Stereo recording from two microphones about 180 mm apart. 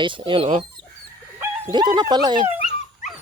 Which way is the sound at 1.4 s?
25° right (ahead or behind).